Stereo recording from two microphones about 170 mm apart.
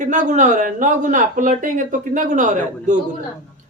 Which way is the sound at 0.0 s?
45° right (ahead or behind).